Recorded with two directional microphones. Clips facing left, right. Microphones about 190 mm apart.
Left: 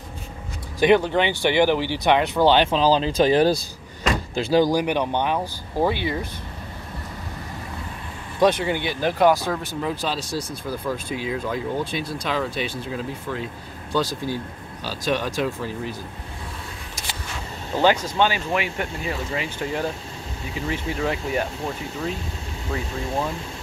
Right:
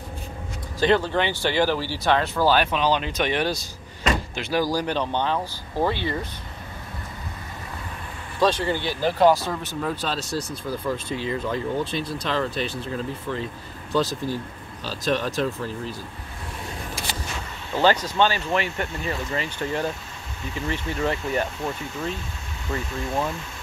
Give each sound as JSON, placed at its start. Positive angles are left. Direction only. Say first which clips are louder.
{"t": 0.7, "sound": "speech", "louder": "left 3 dB", "side_deg": 15}
{"t": 8.4, "sound": "speech", "louder": "left 2 dB", "side_deg": 20}
{"t": 14.9, "sound": "speech", "louder": "even", "side_deg": 10}
{"t": 17.7, "sound": "speech", "louder": "left 1 dB", "side_deg": 10}